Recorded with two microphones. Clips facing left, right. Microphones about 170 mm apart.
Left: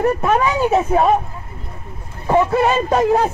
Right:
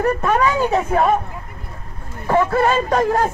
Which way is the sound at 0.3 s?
20° left (ahead or behind).